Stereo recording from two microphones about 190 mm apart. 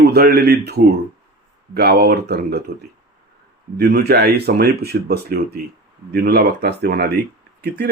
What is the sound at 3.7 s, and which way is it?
Speech, 60° right (ahead or behind).